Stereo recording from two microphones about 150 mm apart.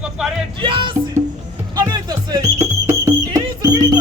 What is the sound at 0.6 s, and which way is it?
Music, 35° right (ahead or behind).